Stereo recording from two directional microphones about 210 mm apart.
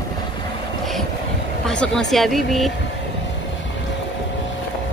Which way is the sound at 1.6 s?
5° left (ahead or behind).